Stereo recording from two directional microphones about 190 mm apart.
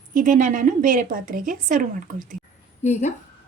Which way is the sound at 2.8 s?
40° left (ahead or behind).